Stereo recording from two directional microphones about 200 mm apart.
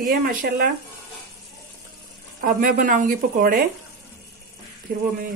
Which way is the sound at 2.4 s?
40° right (ahead or behind).